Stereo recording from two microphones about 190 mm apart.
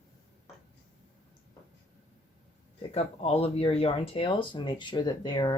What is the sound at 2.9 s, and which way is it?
Speech, 30° left (ahead or behind).